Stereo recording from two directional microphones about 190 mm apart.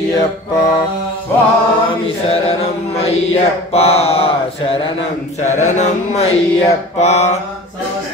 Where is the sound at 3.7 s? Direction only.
30° left (ahead or behind).